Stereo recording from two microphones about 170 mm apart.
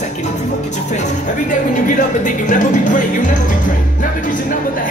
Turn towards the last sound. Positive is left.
turn(degrees=50)  # may be behind; listen again after turning